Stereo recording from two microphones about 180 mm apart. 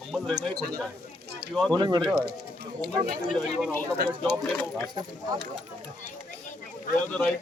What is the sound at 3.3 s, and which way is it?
Speech, 5° left (ahead or behind).